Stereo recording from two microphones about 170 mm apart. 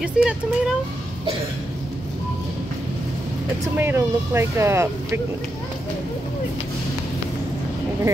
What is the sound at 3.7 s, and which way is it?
Speech, 15° right (ahead or behind).